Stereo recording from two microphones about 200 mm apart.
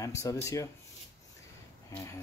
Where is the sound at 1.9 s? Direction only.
15° left (ahead or behind).